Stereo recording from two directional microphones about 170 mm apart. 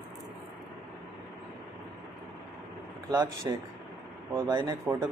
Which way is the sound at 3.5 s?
20° right (ahead or behind).